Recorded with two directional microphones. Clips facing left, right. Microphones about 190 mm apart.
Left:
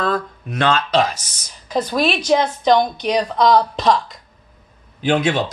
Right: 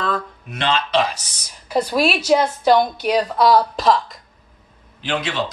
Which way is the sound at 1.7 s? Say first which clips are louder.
Even; 10° right (ahead or behind).